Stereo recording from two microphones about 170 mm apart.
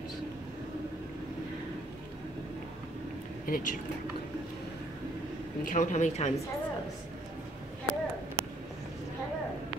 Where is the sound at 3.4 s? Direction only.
55° left (ahead or behind).